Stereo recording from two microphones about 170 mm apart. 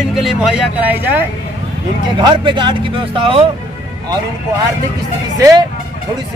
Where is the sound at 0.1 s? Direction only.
Centre (ahead or behind).